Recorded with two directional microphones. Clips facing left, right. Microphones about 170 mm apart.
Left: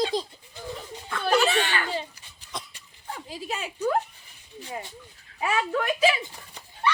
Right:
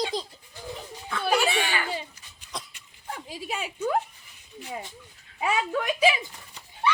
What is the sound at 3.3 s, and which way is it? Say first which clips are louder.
Speech: even; 10° right (ahead or behind).